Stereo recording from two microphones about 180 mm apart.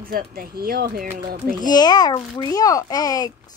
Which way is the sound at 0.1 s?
55° right (ahead or behind).